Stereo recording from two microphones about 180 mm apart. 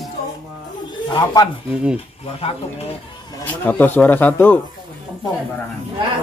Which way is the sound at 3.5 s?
10° left (ahead or behind).